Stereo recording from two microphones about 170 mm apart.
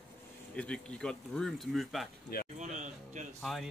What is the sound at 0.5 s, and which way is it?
Speech, 5° left (ahead or behind).